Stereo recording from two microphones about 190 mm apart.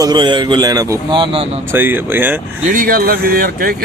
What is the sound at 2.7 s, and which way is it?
Speech, 50° right (ahead or behind).